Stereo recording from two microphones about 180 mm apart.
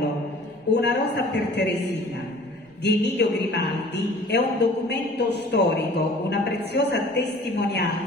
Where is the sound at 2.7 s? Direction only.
70° left (ahead or behind).